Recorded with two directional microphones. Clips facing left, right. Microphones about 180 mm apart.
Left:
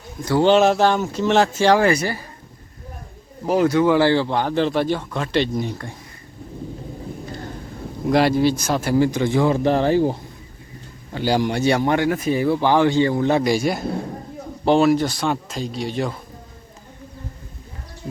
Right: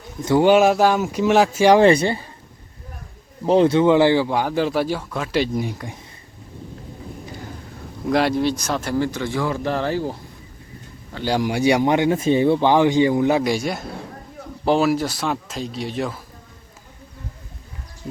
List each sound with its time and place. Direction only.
0.2 s speech: 20° right (ahead or behind)
0.4 s speech: 10° right (ahead or behind)
1.8 s speech: 25° right (ahead or behind)
3.4 s speech: 25° right (ahead or behind)
8.0 s speech: centre (ahead or behind); by 10.2 s 20° left (ahead or behind)
11.1 s speech: 5° left (ahead or behind)
11.5 s speech: 15° right (ahead or behind)